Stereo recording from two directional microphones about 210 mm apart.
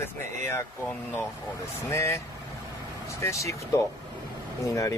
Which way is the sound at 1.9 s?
15° left (ahead or behind).